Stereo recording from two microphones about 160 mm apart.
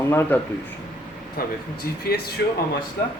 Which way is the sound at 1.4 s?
65° left (ahead or behind).